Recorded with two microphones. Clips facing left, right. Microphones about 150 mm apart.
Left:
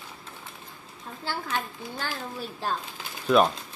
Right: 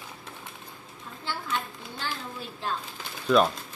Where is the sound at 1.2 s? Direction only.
40° left (ahead or behind).